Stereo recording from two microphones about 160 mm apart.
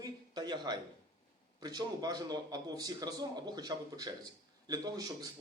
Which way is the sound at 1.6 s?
25° right (ahead or behind).